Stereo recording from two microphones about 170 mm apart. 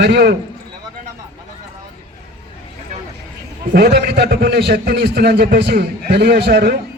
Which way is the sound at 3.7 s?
70° right (ahead or behind).